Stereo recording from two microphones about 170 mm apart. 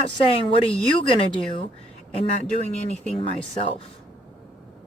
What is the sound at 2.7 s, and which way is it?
Speech, 40° left (ahead or behind).